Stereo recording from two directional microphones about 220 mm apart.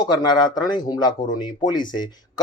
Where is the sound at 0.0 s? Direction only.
20° left (ahead or behind).